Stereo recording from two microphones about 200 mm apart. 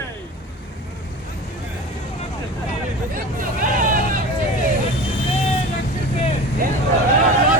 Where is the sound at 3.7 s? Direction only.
45° right (ahead or behind).